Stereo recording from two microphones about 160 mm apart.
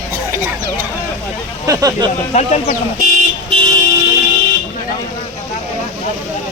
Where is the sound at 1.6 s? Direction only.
20° right (ahead or behind).